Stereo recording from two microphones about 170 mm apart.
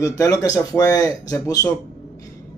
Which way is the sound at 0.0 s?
20° left (ahead or behind).